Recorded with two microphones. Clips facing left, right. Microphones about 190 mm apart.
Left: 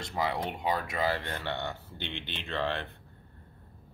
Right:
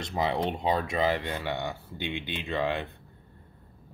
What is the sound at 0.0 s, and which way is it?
Speech, 20° right (ahead or behind).